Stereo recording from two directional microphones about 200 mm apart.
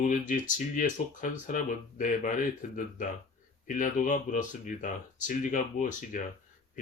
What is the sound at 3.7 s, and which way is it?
Speech, 40° left (ahead or behind).